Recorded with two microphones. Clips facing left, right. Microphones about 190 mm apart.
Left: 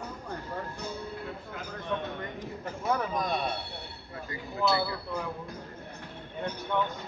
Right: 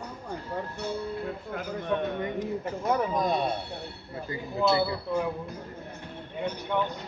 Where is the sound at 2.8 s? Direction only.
20° right (ahead or behind).